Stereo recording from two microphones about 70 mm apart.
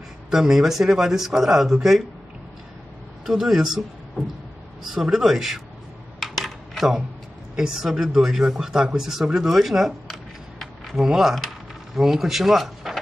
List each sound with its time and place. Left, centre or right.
0.3 s speech: centre
3.3 s speech: centre
4.2 s a sound: centre
4.8 s speech: centre
6.1 s a sound: centre
7.5 s speech: centre